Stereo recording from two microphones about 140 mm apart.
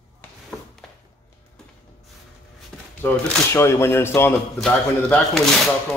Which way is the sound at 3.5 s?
20° left (ahead or behind).